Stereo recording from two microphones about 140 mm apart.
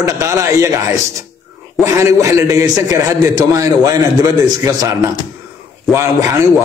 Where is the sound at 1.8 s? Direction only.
20° right (ahead or behind).